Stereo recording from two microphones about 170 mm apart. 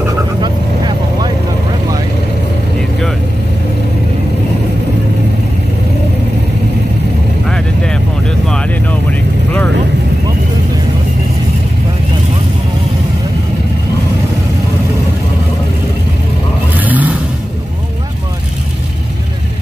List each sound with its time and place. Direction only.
0.4 s vehicle: 25° right (ahead or behind)
7.4 s vehicle: 5° left (ahead or behind)
16.8 s vehicle: 10° right (ahead or behind)